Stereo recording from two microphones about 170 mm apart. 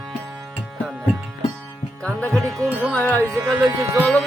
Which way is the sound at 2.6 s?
10° right (ahead or behind).